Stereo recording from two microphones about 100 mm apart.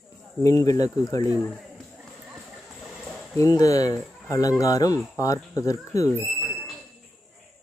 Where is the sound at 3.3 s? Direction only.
35° left (ahead or behind).